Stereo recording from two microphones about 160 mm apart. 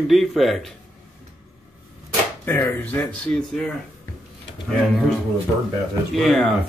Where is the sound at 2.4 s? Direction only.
10° left (ahead or behind).